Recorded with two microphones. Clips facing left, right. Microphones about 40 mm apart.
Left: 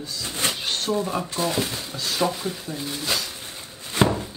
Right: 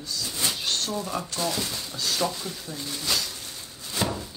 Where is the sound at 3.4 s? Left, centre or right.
Left.